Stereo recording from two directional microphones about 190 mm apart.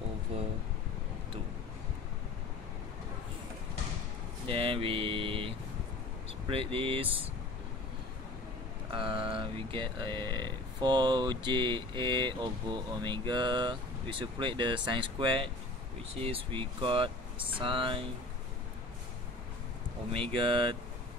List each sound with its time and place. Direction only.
4.5 s a sound: 30° right (ahead or behind)
6.5 s speech: 30° right (ahead or behind)
8.9 s speech: 30° right (ahead or behind)
20.1 s speech: 30° right (ahead or behind)